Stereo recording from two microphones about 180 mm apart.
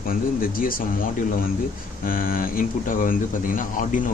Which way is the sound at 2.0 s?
50° left (ahead or behind).